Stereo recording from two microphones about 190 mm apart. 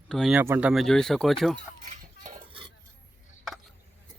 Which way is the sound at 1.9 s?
40° right (ahead or behind).